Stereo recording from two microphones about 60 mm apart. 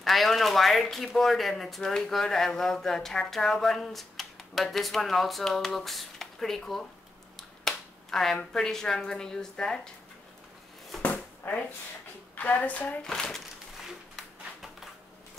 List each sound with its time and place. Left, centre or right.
0.0 s speech: centre
7.3 s finger snapping: centre
8.5 s a woman's voice: centre
11.0 s a sound: left
12.4 s a woman's voice: left
13.0 s a woman's voice: centre